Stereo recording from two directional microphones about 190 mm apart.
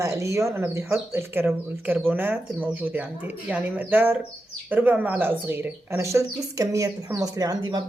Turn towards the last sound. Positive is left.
turn(degrees=-20)  # may be behind; listen again after turning